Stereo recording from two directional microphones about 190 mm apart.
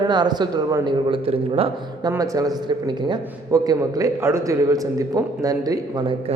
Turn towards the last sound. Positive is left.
turn(degrees=-20)  # may be behind; listen again after turning